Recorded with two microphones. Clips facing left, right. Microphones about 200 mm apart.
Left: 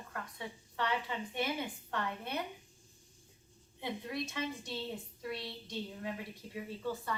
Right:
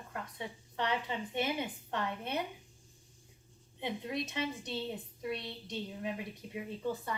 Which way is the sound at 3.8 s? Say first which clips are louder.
Right 2 dB; 20° right (ahead or behind).